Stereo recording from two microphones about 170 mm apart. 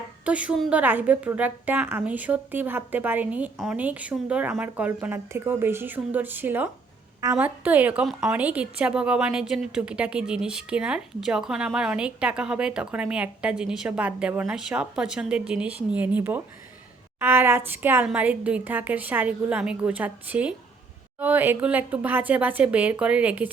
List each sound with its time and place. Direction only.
0.3 s a woman's voice: 5° right (ahead or behind)